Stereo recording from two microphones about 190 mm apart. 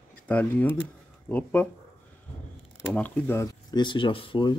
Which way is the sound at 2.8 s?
5° left (ahead or behind).